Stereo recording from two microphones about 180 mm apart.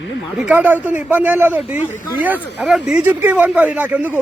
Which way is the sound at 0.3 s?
5° right (ahead or behind).